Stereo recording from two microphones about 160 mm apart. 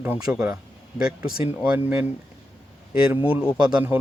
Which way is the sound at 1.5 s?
10° right (ahead or behind).